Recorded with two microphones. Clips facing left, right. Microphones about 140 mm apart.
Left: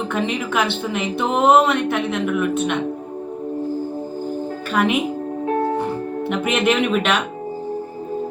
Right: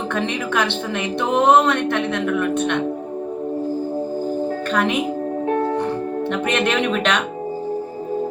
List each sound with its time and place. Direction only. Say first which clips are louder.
0.1 s a woman's voice: right 1 dB; 5° left (ahead or behind)
4.7 s speech: left 3 dB; 5° left (ahead or behind)
5.5 s music: even; 30° left (ahead or behind)
6.3 s a woman's voice: left 2 dB; 5° left (ahead or behind)